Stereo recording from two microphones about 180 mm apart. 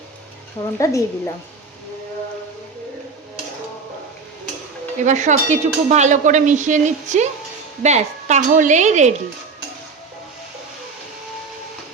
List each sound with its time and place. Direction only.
0.8 s a woman's voice: 15° left (ahead or behind)
4.9 s speech: 40° right (ahead or behind)